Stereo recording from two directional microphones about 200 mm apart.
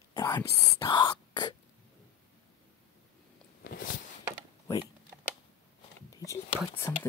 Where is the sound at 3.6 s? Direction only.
50° left (ahead or behind).